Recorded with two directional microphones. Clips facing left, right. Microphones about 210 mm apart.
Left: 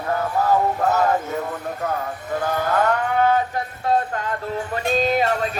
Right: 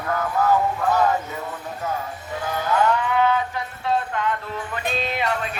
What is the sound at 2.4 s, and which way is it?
Livestock, 50° left (ahead or behind).